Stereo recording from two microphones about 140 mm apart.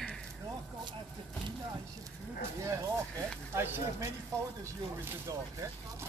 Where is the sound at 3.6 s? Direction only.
20° right (ahead or behind).